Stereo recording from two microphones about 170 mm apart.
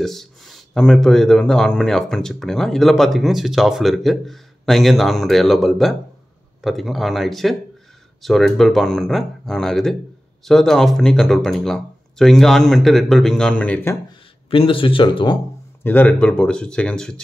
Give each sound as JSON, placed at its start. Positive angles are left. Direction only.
{"t": 0.0, "sound": "speech", "side_deg": 0}
{"t": 14.5, "sound": "speech", "side_deg": 30}
{"t": 15.8, "sound": "speech", "side_deg": 10}